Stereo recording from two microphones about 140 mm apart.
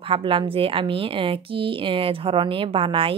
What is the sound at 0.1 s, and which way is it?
A woman's voice, 40° right (ahead or behind).